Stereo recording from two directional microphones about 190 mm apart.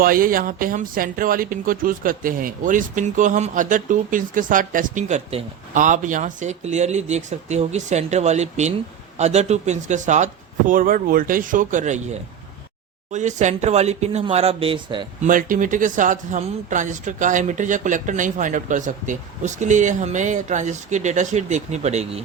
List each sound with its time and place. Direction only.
0.0 s speech: 50° right (ahead or behind)
13.1 s speech: 40° right (ahead or behind)
15.2 s speech: 45° right (ahead or behind)